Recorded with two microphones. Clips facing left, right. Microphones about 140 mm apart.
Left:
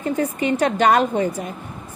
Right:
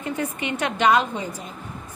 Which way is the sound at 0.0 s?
35° left (ahead or behind).